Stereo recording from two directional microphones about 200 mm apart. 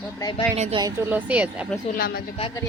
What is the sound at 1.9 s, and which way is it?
Speech, 50° left (ahead or behind).